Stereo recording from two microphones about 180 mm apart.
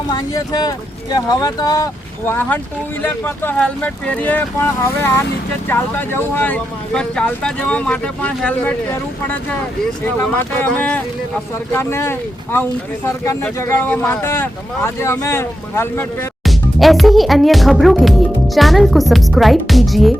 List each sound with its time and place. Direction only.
0.1 s speech: 20° left (ahead or behind)
16.4 s speech: centre (ahead or behind)